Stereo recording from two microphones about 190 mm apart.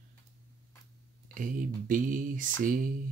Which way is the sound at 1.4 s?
45° right (ahead or behind).